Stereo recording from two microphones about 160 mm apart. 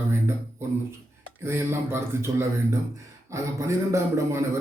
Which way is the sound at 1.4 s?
15° right (ahead or behind).